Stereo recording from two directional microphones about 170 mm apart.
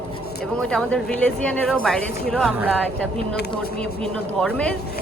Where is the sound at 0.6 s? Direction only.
5° left (ahead or behind).